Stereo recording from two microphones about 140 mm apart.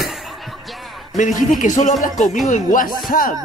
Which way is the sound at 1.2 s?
65° left (ahead or behind).